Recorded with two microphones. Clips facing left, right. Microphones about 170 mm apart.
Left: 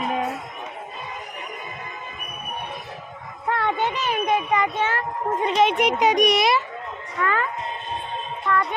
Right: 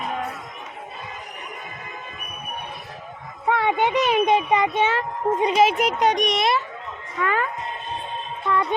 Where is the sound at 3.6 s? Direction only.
15° right (ahead or behind); by 6.6 s 5° left (ahead or behind).